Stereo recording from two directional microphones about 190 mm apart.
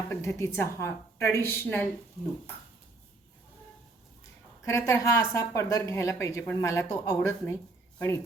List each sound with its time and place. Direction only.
0.1 s a woman's voice: 15° left (ahead or behind)
4.6 s a woman's voice: 15° left (ahead or behind)